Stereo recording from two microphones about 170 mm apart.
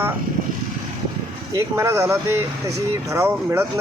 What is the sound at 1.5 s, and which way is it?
Speech, 15° right (ahead or behind).